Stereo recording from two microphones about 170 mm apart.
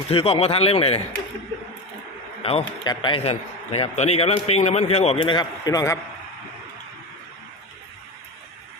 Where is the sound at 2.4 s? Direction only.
35° left (ahead or behind).